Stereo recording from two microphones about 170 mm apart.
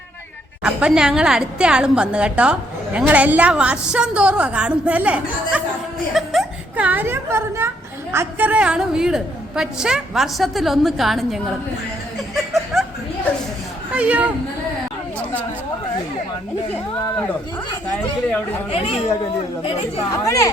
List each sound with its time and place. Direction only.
0.6 s a woman's voice: 5° right (ahead or behind)
12.7 s chuckle: centre (ahead or behind)
13.9 s speech: 10° right (ahead or behind)
18.7 s speech: 35° left (ahead or behind)
20.1 s a woman's voice: 20° left (ahead or behind)